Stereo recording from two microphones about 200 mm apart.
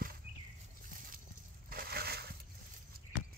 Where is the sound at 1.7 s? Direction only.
50° right (ahead or behind).